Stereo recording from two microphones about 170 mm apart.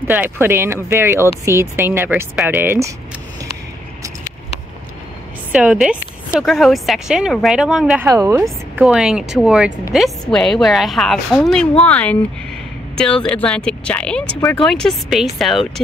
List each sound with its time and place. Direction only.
0.0 s speech: 10° right (ahead or behind)
5.5 s a woman's voice: 5° right (ahead or behind)
8.1 s speech: 15° right (ahead or behind)
8.7 s a woman's voice: 5° right (ahead or behind)